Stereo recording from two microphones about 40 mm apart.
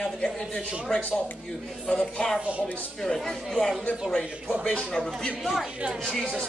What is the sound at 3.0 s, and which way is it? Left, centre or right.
Speech, centre.